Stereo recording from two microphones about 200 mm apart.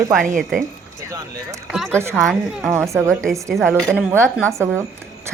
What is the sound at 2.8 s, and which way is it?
Speech, 15° right (ahead or behind).